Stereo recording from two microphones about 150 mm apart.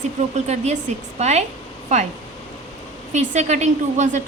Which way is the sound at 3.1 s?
50° right (ahead or behind).